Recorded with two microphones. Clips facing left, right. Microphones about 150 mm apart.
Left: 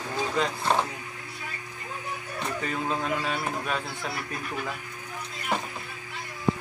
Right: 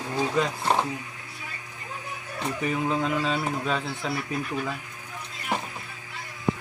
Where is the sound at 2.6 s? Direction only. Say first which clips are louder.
Right 5 dB; 15° right (ahead or behind).